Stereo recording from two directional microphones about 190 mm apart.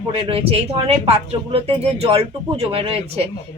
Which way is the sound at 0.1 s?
30° right (ahead or behind).